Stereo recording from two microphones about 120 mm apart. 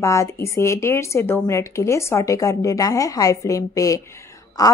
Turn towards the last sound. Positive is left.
turn(degrees=30)  # may be behind; listen again after turning